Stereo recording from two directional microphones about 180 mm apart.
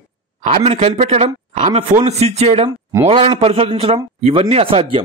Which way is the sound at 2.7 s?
20° right (ahead or behind).